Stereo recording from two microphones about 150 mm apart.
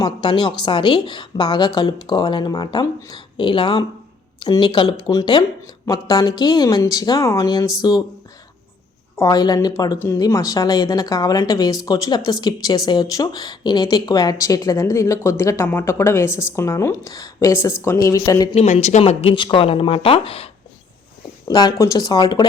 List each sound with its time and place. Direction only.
0.0 s a woman's voice: 30° left (ahead or behind)
9.1 s a woman's voice: 25° left (ahead or behind)
18.5 s speech: 50° left (ahead or behind)
21.4 s a woman's voice: 25° left (ahead or behind)